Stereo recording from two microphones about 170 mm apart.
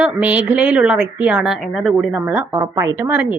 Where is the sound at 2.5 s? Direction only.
20° right (ahead or behind).